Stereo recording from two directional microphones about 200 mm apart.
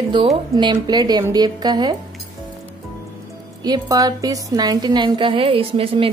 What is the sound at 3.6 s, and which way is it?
A woman's voice, 20° right (ahead or behind).